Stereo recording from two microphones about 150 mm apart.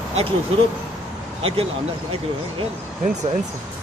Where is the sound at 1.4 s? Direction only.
40° right (ahead or behind).